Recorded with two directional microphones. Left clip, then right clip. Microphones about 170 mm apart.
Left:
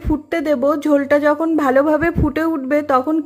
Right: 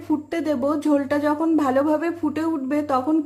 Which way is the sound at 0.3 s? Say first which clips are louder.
Left 8 dB; 25° left (ahead or behind).